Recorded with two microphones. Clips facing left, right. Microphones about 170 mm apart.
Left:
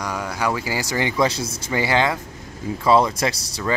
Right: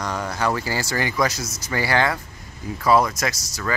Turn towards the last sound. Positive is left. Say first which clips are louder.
# left 3 dB
turn(degrees=30)  # may be behind; listen again after turning